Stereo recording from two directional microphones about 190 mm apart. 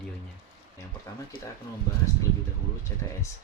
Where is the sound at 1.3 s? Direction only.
50° left (ahead or behind).